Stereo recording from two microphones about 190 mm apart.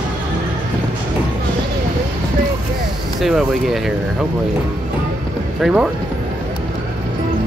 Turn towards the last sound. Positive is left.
turn(degrees=-5)  # may be behind; listen again after turning